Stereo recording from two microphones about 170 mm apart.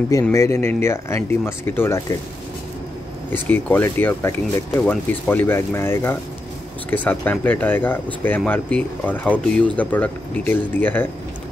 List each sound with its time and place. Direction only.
0.3 s speech: 15° left (ahead or behind)
3.3 s speech: 10° left (ahead or behind)